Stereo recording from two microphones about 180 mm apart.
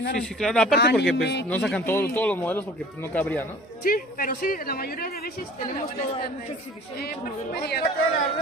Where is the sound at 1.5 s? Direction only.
5° left (ahead or behind).